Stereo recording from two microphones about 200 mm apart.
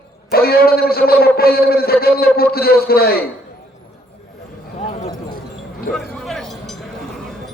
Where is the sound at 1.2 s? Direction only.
50° left (ahead or behind).